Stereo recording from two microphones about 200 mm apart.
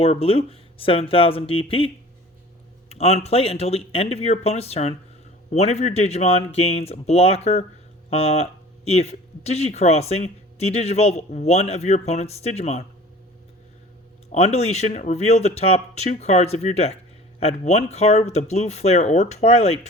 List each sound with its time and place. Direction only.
0.0 s speech: 30° left (ahead or behind)
3.0 s speech: 30° left (ahead or behind)
14.3 s speech: 30° left (ahead or behind)